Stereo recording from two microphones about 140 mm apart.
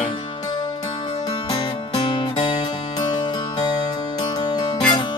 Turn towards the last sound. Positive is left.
turn(degrees=35)  # may be behind; listen again after turning